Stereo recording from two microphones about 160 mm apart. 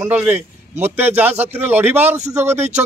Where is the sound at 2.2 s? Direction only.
45° right (ahead or behind).